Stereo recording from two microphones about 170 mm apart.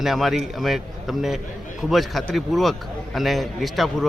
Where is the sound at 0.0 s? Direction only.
Centre (ahead or behind).